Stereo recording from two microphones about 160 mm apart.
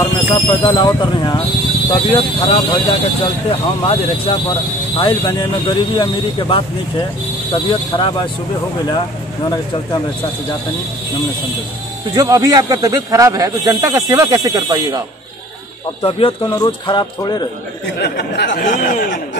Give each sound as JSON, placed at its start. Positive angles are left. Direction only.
{"t": 0.0, "sound": "speech", "side_deg": 30}
{"t": 12.2, "sound": "speech", "side_deg": -25}
{"t": 16.0, "sound": "speech", "side_deg": 35}
{"t": 17.9, "sound": "speech", "side_deg": 90}
{"t": 18.6, "sound": "speech", "side_deg": 55}